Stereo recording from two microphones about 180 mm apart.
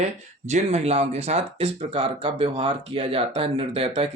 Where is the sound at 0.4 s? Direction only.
40° right (ahead or behind).